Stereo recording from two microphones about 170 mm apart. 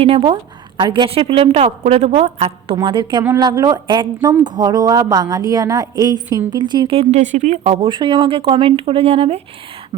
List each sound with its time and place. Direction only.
0.0 s a woman's voice: 35° right (ahead or behind)
2.7 s a woman's voice: 25° right (ahead or behind); by 7.7 s 45° right (ahead or behind)
7.7 s a woman's voice: 30° right (ahead or behind)